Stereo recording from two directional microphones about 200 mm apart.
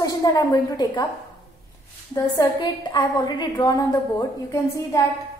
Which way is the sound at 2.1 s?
20° left (ahead or behind).